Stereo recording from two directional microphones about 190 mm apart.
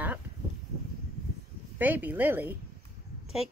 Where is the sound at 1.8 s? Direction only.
10° right (ahead or behind).